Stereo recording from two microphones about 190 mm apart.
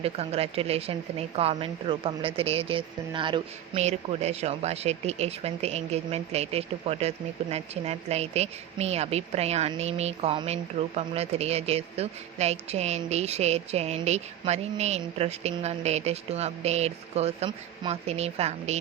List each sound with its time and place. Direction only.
0.0 s a woman's voice: 30° right (ahead or behind)